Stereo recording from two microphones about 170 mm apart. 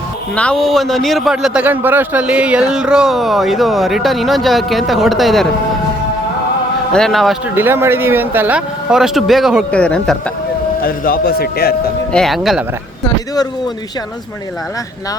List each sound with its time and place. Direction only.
0.3 s a man's voice: 5° left (ahead or behind)
6.9 s a man's voice: centre (ahead or behind)
7.5 s a man's voice: 15° right (ahead or behind); by 10.2 s 5° left (ahead or behind)
10.8 s a man's voice: 60° left (ahead or behind)
12.1 s a man's voice: centre (ahead or behind)